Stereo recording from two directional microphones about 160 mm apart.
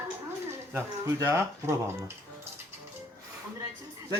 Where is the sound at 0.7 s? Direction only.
15° right (ahead or behind).